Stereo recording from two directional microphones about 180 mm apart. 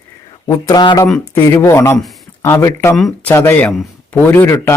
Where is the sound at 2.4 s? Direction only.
15° left (ahead or behind).